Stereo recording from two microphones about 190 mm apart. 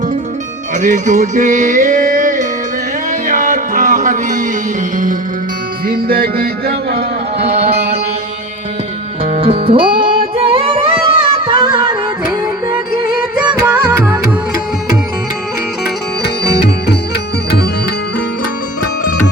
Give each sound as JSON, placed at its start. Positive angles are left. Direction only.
{"t": 0.8, "sound": "music", "side_deg": -40}
{"t": 5.9, "sound": "music", "side_deg": -50}
{"t": 7.4, "sound": "music", "side_deg": -35}
{"t": 7.7, "sound": "music", "side_deg": -55}
{"t": 9.2, "sound": "music", "side_deg": -35}
{"t": 13.6, "sound": "music", "side_deg": -15}
{"t": 16.2, "sound": "music", "side_deg": 60}